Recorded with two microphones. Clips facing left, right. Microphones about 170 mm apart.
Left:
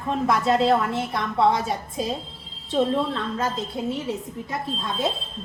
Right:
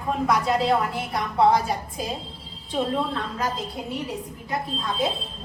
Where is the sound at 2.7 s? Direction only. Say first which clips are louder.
Left 3 dB; centre (ahead or behind).